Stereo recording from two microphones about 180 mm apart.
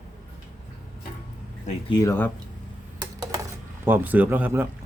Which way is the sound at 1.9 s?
15° left (ahead or behind).